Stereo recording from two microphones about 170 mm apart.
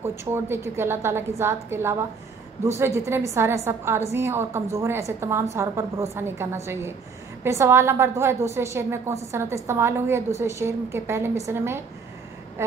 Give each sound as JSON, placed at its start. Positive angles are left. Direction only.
{"t": 0.0, "sound": "a woman's voice", "side_deg": -15}